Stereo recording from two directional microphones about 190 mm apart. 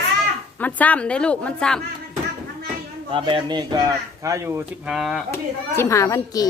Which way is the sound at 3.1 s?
25° right (ahead or behind).